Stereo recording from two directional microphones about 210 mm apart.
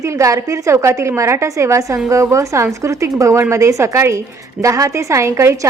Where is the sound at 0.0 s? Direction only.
15° right (ahead or behind).